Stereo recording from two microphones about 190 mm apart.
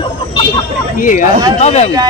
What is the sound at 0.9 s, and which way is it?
Speech, 45° left (ahead or behind).